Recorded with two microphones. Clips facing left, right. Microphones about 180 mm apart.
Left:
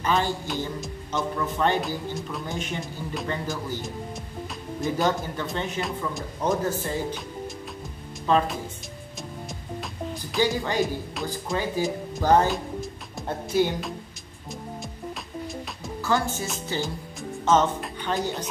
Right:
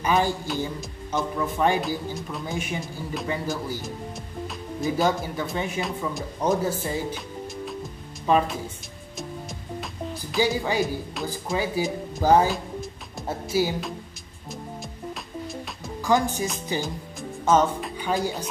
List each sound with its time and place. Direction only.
0.0 s speech: 10° right (ahead or behind)
4.8 s speech: 5° right (ahead or behind)
6.7 s speech: 10° right (ahead or behind)
8.3 s speech: 10° right (ahead or behind)
10.3 s speech: 10° right (ahead or behind)
16.0 s speech: 15° right (ahead or behind)
16.8 s music: 5° right (ahead or behind)
17.7 s a woman's voice: 10° right (ahead or behind)